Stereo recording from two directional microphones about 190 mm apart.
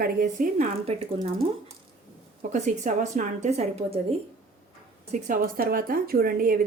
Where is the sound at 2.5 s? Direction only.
40° right (ahead or behind).